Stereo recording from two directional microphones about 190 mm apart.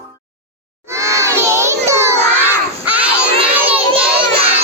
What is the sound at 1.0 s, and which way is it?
Crowd, 15° right (ahead or behind).